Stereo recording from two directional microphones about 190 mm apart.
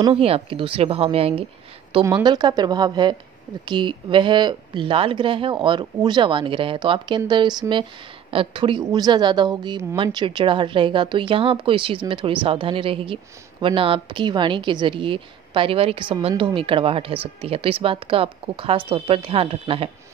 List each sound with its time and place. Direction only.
0.0 s a woman's voice: 30° right (ahead or behind)